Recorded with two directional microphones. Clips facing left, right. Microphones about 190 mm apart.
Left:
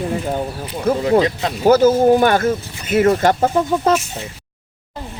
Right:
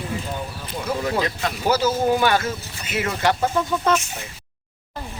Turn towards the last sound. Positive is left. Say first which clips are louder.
# left 5 dB
turn(degrees=40)  # may be behind; listen again after turning